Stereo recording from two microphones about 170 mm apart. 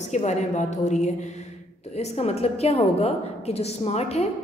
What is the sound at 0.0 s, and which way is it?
A woman's voice, 40° left (ahead or behind).